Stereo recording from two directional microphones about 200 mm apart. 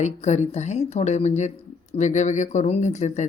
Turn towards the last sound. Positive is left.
turn(degrees=35)  # may be behind; listen again after turning